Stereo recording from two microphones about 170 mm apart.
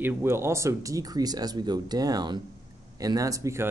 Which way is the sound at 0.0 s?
15° right (ahead or behind).